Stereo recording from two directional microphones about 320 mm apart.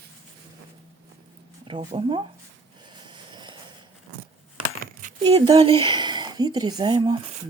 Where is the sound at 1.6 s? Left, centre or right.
Centre.